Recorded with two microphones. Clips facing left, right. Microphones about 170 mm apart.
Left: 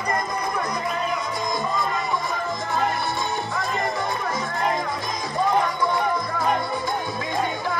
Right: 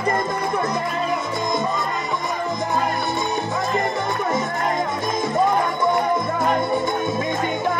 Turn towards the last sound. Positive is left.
turn(degrees=-20)  # may be behind; listen again after turning